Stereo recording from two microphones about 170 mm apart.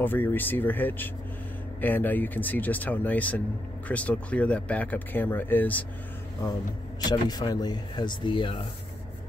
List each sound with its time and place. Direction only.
0.0 s speech: 10° left (ahead or behind)
7.1 s speech: 25° left (ahead or behind)